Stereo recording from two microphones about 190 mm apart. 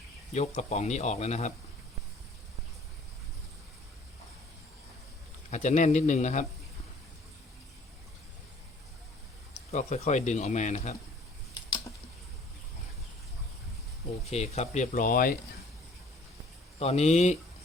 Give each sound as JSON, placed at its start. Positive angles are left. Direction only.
{"t": 0.3, "sound": "speech", "side_deg": 40}
{"t": 5.5, "sound": "speech", "side_deg": 40}
{"t": 9.7, "sound": "speech", "side_deg": 40}
{"t": 14.3, "sound": "speech", "side_deg": 35}
{"t": 16.8, "sound": "speech", "side_deg": 35}